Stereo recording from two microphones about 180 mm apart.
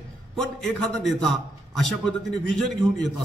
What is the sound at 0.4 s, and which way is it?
A man's voice, centre (ahead or behind).